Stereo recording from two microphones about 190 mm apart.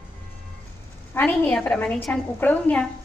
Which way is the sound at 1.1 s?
10° left (ahead or behind).